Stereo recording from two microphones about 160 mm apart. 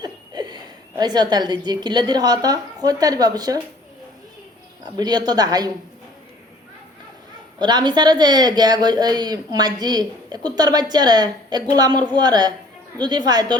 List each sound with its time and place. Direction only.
0.0 s a woman's voice: 25° right (ahead or behind)
4.9 s speech: 25° right (ahead or behind)
7.6 s speech: 25° right (ahead or behind)